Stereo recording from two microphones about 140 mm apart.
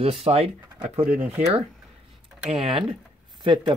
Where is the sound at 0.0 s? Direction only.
45° right (ahead or behind).